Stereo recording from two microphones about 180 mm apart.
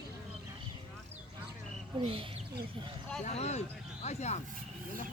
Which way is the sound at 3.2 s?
35° left (ahead or behind).